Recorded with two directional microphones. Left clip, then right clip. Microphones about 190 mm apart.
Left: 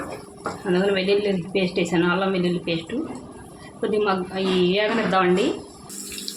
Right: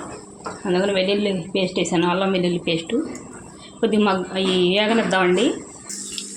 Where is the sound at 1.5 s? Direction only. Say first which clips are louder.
Right 2 dB; 25° right (ahead or behind).